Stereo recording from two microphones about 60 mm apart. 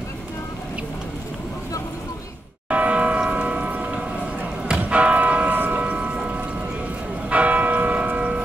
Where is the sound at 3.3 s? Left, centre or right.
Centre.